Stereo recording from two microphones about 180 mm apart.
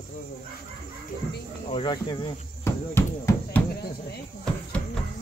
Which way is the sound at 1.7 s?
25° left (ahead or behind).